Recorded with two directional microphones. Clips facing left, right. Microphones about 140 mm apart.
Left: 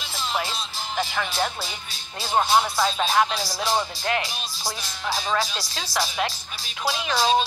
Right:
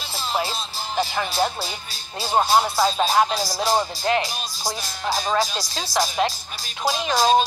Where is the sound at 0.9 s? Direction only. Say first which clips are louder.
Right 3 dB; 35° right (ahead or behind).